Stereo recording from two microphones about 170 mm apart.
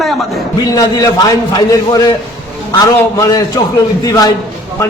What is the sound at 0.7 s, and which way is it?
A man's voice, 20° left (ahead or behind).